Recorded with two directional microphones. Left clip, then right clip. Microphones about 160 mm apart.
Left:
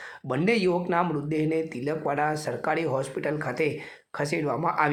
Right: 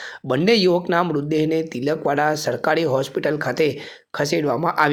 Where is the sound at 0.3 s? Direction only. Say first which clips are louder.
Right 7 dB; 30° right (ahead or behind).